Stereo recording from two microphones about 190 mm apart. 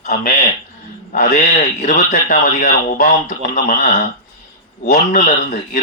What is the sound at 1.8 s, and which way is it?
A man's voice, 45° left (ahead or behind).